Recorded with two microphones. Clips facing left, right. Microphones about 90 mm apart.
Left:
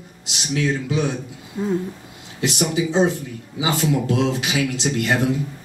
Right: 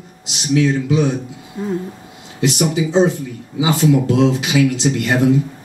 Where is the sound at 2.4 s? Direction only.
20° right (ahead or behind).